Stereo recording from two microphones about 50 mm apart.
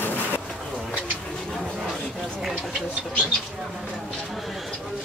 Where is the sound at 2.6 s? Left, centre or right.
Centre.